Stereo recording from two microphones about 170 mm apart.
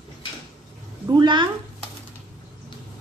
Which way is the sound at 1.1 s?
25° right (ahead or behind).